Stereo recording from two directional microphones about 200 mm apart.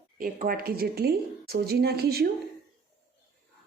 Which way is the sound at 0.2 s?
45° right (ahead or behind).